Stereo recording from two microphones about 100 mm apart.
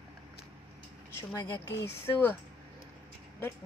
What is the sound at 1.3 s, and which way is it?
Speech, 25° left (ahead or behind).